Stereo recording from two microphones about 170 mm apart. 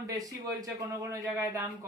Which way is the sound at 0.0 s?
20° right (ahead or behind).